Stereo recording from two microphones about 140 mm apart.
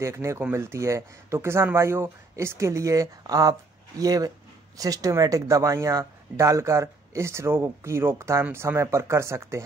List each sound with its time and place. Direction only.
0.0 s speech: 20° right (ahead or behind)